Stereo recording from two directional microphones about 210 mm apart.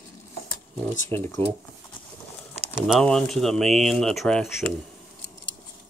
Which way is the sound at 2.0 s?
25° left (ahead or behind).